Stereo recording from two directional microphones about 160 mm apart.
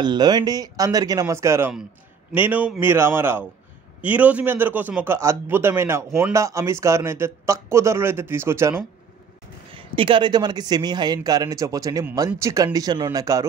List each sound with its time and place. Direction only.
0.0 s a man's voice: 25° right (ahead or behind)
9.8 s speech: 30° right (ahead or behind)